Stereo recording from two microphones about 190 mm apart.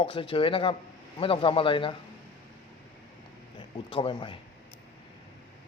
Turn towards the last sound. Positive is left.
turn(degrees=25)  # may be behind; listen again after turning